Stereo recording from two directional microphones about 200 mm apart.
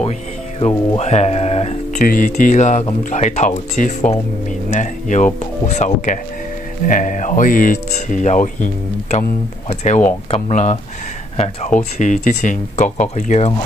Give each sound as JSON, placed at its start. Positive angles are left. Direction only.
{"t": 0.6, "sound": "speech", "side_deg": 30}
{"t": 2.0, "sound": "speech", "side_deg": 45}
{"t": 9.7, "sound": "speech", "side_deg": 35}